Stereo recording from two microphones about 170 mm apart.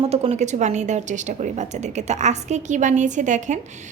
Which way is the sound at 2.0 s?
45° right (ahead or behind).